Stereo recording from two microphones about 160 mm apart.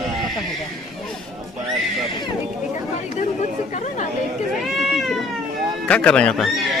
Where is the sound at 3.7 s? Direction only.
50° left (ahead or behind).